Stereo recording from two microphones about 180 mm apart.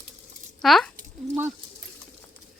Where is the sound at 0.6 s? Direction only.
Centre (ahead or behind).